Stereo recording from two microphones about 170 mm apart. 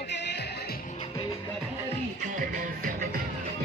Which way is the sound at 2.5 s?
55° right (ahead or behind).